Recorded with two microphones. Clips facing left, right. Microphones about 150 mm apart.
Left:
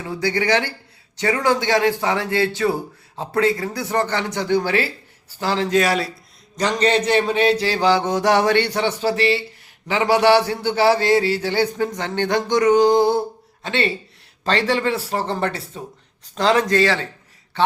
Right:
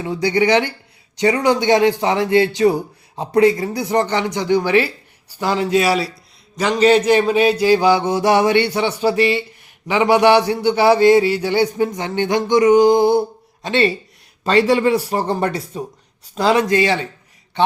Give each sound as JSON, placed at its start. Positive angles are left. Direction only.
{"t": 0.2, "sound": "a man's voice", "side_deg": -20}